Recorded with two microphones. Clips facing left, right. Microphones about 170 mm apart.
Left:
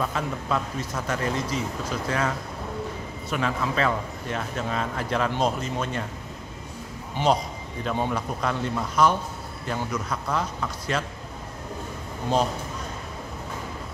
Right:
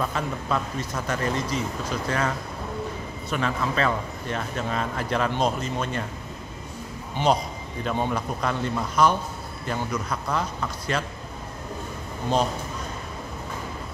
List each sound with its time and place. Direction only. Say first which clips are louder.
0.0 s speech: even; 5° left (ahead or behind)
7.3 s speech: even; centre (ahead or behind)